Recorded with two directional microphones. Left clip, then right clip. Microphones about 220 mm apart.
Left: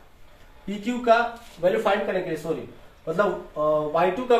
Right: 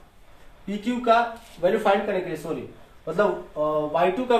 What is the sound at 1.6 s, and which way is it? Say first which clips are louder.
Speech: even; 20° right (ahead or behind).